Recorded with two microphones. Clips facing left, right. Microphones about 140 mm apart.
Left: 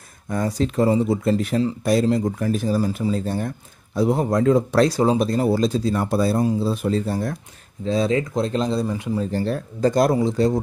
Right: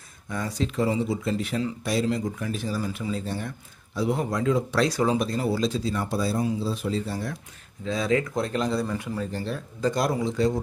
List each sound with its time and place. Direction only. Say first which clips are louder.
0.3 s speech: left 6 dB; 45° left (ahead or behind)
4.8 s speech: left 5 dB; 30° left (ahead or behind); by 7.3 s 50° left (ahead or behind)
7.8 s speech: left 4 dB; 30° left (ahead or behind)
9.3 s speech: left 8 dB; 45° left (ahead or behind)